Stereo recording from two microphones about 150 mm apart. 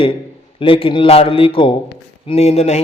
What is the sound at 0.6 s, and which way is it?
A man's voice, 35° left (ahead or behind).